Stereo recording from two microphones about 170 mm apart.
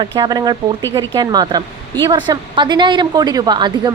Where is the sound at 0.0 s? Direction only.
25° right (ahead or behind).